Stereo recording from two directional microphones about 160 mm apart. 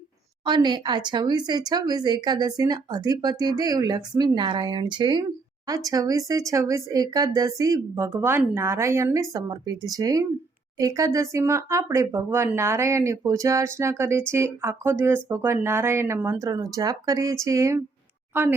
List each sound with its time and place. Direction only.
0.4 s speech: 30° right (ahead or behind)